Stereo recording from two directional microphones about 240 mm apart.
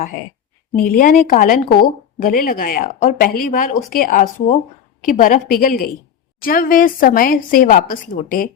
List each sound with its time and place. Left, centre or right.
0.8 s a woman's voice: left